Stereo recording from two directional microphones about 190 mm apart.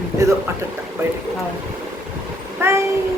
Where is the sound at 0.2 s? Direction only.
15° right (ahead or behind).